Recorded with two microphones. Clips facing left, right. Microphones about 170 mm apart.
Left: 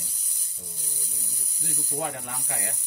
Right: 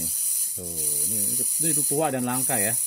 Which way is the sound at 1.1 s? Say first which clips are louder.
Right 13 dB; 70° right (ahead or behind).